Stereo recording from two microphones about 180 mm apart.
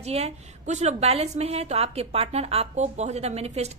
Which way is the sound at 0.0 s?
35° right (ahead or behind).